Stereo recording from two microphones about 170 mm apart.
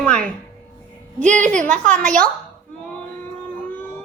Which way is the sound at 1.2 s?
45° right (ahead or behind).